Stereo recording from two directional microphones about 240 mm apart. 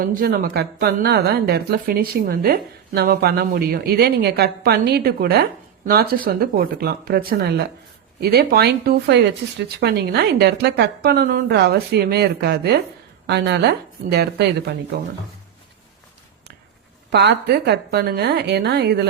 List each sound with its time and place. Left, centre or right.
0.0 s speech: right
17.1 s speech: right